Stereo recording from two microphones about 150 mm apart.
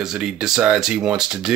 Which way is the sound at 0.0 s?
5° right (ahead or behind).